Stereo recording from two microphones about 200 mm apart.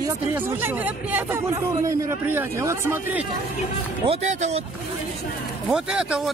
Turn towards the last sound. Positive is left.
turn(degrees=-5)  # may be behind; listen again after turning